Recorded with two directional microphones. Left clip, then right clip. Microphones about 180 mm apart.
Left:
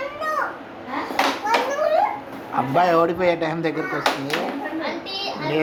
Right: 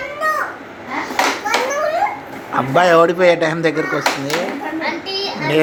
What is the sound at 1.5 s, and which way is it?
Children playing, 5° left (ahead or behind).